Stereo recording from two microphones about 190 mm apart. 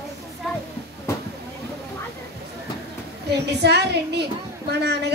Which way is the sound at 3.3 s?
60° right (ahead or behind).